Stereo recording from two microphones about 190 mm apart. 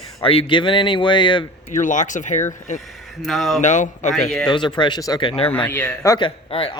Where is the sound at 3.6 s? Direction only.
40° left (ahead or behind).